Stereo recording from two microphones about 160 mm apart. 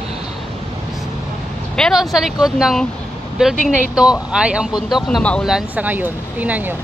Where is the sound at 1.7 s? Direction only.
Centre (ahead or behind).